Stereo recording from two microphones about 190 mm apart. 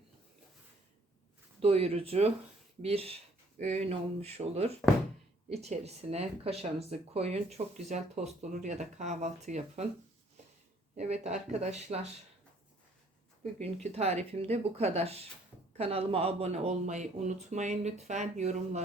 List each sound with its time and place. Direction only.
1.6 s speech: 30° right (ahead or behind)
10.9 s speech: 35° right (ahead or behind)
13.9 s speech: 35° right (ahead or behind)